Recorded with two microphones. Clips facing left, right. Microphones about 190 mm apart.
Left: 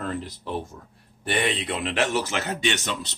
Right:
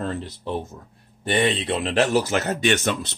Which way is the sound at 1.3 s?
25° right (ahead or behind).